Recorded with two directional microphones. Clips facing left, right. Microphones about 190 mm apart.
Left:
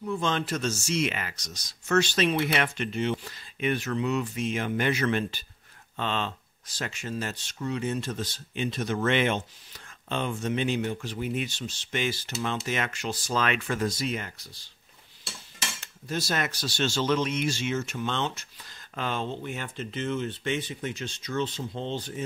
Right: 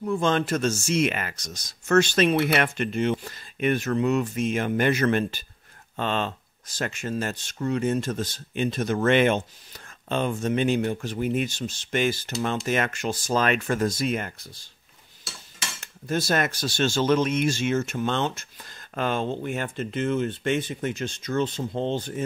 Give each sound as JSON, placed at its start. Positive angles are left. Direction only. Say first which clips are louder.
{"t": 0.0, "sound": "speech", "louder": "right 5 dB", "side_deg": -50}
{"t": 15.8, "sound": "speech", "louder": "right 6 dB", "side_deg": -50}